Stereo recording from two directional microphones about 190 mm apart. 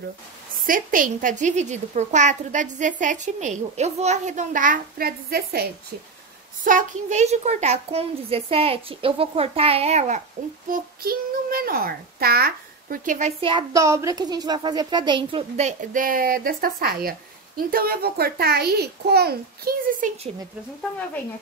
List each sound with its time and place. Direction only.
0.7 s a woman's voice: 45° right (ahead or behind)
6.6 s a woman's voice: 45° right (ahead or behind)
10.7 s a child's voice: 50° right (ahead or behind)
13.4 s a woman's voice: 25° right (ahead or behind); by 20.1 s 50° right (ahead or behind)